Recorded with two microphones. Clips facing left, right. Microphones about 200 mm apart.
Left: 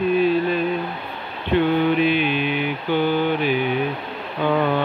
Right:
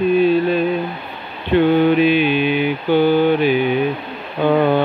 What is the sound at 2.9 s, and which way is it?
Mantra, 30° right (ahead or behind).